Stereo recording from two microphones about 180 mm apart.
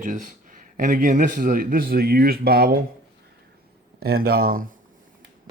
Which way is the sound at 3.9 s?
60° right (ahead or behind).